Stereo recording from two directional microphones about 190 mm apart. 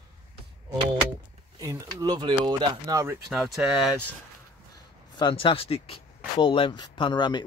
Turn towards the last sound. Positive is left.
turn(degrees=25)  # may be behind; listen again after turning